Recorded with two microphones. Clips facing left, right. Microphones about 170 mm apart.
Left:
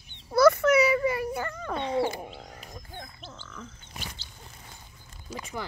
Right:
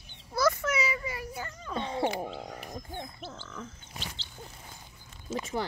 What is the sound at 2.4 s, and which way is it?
Wild animals, 45° right (ahead or behind).